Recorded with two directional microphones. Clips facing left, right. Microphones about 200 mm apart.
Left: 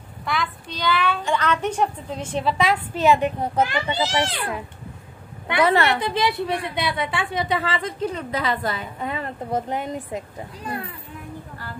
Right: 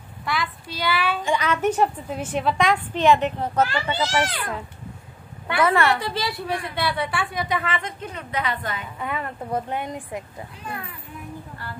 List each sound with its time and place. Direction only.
0.2 s a woman's voice: centre (ahead or behind); by 4.4 s 25° left (ahead or behind)
5.5 s a woman's voice: 20° left (ahead or behind)
10.6 s speech: 30° left (ahead or behind)